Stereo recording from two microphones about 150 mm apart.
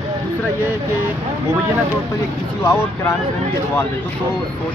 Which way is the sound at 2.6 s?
15° left (ahead or behind).